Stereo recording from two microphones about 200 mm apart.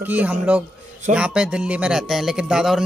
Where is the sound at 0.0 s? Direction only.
10° right (ahead or behind).